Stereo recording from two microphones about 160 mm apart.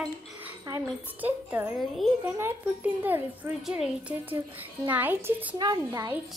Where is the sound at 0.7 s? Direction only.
20° right (ahead or behind).